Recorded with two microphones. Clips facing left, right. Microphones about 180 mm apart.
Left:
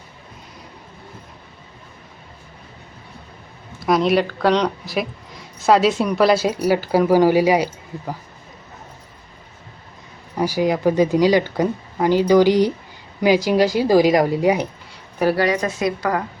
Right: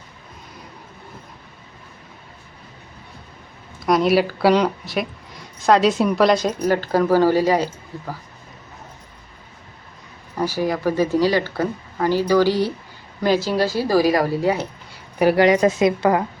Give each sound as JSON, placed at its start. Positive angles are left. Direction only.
{"t": 3.8, "sound": "a woman's voice", "side_deg": 0}
{"t": 10.3, "sound": "speech", "side_deg": 10}
{"t": 15.2, "sound": "a woman's voice", "side_deg": -20}